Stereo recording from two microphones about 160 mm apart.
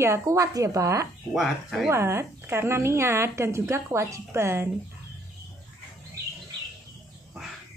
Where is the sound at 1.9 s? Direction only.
15° right (ahead or behind).